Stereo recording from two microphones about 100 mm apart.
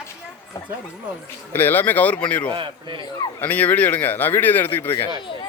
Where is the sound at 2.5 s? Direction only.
55° right (ahead or behind).